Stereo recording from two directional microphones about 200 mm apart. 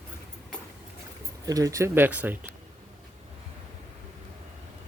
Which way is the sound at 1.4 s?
15° right (ahead or behind).